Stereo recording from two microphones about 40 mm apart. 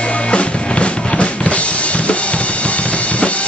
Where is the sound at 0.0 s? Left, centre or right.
Left.